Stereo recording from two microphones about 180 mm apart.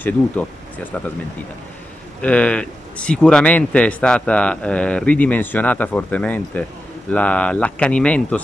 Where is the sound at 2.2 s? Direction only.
5° left (ahead or behind).